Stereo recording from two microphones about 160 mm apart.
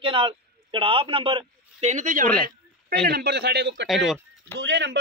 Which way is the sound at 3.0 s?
90° right.